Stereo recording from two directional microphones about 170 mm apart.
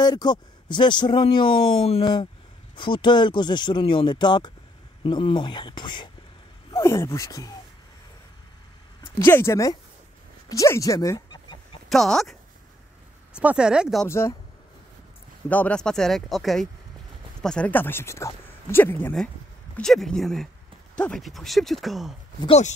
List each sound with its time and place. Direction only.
0.0 s speech: 25° left (ahead or behind)
6.7 s speech: 15° left (ahead or behind)
9.2 s speech: 15° left (ahead or behind)
11.9 s speech: centre (ahead or behind)
14.0 s speech: 15° left (ahead or behind)
15.5 s speech: 5° left (ahead or behind)